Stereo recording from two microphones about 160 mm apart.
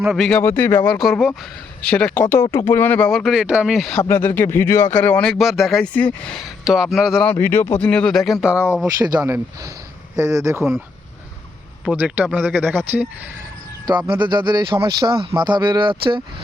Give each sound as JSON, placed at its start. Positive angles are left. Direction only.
{"t": 0.0, "sound": "speech", "side_deg": -5}
{"t": 0.3, "sound": "speech", "side_deg": 10}
{"t": 0.9, "sound": "speech", "side_deg": 0}
{"t": 7.3, "sound": "speech", "side_deg": 15}
{"t": 9.0, "sound": "speech", "side_deg": -20}
{"t": 11.9, "sound": "speech", "side_deg": -10}
{"t": 14.1, "sound": "speech", "side_deg": -30}